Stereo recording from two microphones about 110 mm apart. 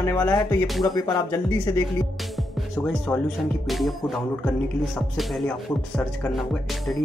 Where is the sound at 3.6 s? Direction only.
Centre (ahead or behind).